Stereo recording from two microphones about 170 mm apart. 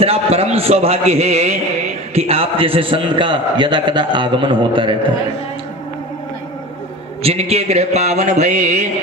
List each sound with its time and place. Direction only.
0.0 s a man's voice: 35° right (ahead or behind)
7.2 s a man's voice: 35° right (ahead or behind)